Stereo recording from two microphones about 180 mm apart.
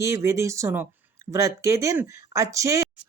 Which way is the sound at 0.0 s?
15° right (ahead or behind).